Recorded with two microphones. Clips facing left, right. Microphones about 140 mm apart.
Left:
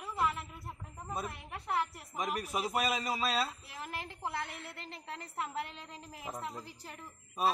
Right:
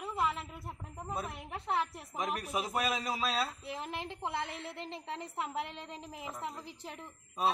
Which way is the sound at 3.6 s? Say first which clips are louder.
Right 3 dB; 20° right (ahead or behind).